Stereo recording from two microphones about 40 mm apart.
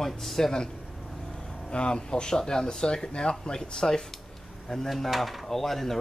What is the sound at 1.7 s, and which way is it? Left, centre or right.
Speech, left.